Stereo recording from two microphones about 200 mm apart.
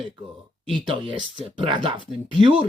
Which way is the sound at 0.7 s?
25° right (ahead or behind).